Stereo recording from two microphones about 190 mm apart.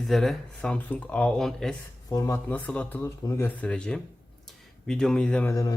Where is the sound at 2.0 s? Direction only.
15° left (ahead or behind).